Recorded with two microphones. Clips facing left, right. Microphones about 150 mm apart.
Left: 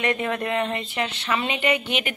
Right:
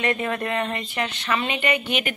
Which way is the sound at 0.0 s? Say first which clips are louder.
Even; 20° left (ahead or behind).